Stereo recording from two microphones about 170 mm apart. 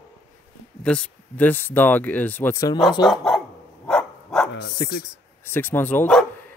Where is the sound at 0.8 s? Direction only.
5° left (ahead or behind).